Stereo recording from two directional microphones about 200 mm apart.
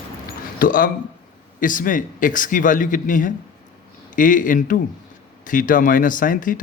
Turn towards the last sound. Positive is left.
turn(degrees=40)  # may be behind; listen again after turning